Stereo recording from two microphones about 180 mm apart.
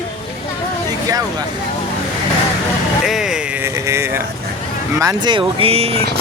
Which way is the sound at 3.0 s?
Centre (ahead or behind).